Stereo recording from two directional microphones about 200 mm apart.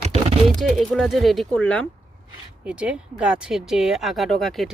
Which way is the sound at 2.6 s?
5° right (ahead or behind).